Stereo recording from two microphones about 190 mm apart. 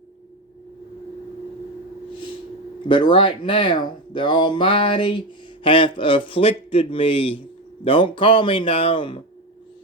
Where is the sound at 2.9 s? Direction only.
25° left (ahead or behind).